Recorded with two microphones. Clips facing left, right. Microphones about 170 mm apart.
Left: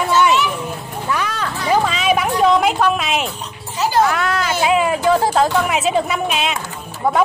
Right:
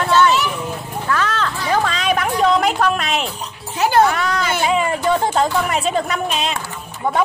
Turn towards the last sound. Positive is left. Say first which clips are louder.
# left 1 dB
turn(degrees=5)  # may be behind; listen again after turning